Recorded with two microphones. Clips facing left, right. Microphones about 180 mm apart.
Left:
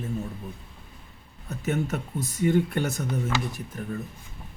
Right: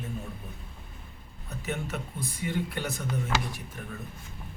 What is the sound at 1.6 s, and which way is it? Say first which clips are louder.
Speech: left 6 dB; 40° left (ahead or behind).